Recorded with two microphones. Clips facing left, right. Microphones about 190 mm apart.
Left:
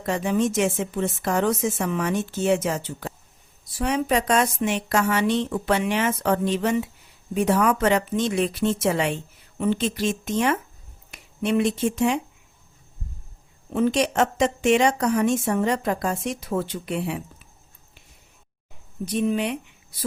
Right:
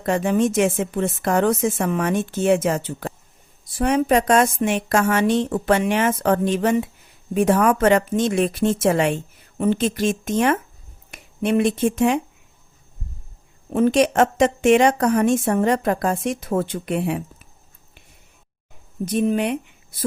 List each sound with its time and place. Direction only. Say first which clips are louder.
0.0 s a woman's voice: right 4 dB; 55° right (ahead or behind)
13.7 s a woman's voice: right 4 dB; 50° right (ahead or behind)
19.0 s a woman's voice: right 3 dB; 45° right (ahead or behind)